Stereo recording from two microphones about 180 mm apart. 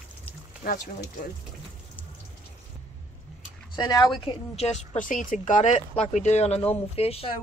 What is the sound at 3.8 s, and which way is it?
A woman's voice, 20° left (ahead or behind).